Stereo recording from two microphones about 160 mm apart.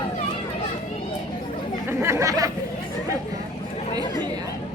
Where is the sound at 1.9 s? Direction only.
15° right (ahead or behind).